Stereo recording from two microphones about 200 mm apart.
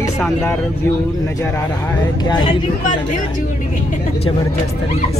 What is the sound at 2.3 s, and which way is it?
Speech, 25° left (ahead or behind).